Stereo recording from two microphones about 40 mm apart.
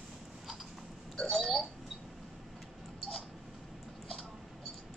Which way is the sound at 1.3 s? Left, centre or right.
Centre.